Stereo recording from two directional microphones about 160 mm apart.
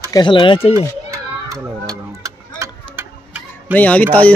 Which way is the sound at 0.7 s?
20° right (ahead or behind).